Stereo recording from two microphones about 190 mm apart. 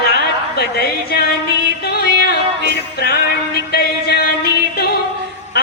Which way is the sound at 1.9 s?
55° left (ahead or behind).